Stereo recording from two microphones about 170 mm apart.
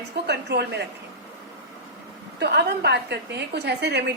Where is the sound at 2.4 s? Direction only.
75° right (ahead or behind).